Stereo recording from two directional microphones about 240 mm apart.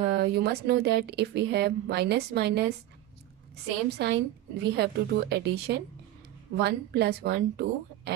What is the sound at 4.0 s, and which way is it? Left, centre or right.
Speech, right.